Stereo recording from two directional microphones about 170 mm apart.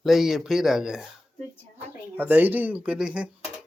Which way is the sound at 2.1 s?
10° right (ahead or behind).